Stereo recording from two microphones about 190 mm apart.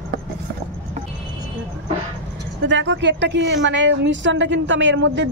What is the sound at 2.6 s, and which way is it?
A woman's voice, 70° right (ahead or behind).